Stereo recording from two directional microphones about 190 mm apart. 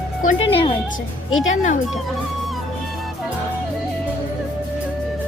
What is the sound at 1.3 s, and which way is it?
Speech, 90° left.